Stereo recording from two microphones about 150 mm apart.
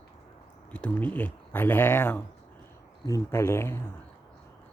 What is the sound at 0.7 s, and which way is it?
Speech, 10° left (ahead or behind).